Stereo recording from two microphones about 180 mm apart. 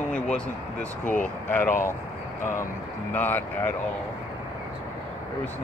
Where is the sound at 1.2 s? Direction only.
10° left (ahead or behind).